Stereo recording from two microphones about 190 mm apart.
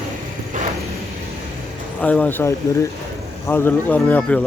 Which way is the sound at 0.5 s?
40° right (ahead or behind).